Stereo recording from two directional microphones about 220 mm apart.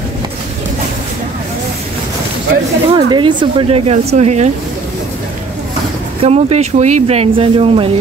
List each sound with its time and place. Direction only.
2.9 s speech: 20° right (ahead or behind)
6.2 s speech: 30° right (ahead or behind)